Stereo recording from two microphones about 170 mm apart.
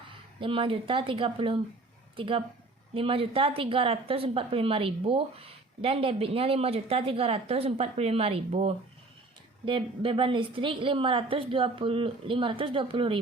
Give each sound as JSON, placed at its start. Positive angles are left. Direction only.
{"t": 0.3, "sound": "speech", "side_deg": -30}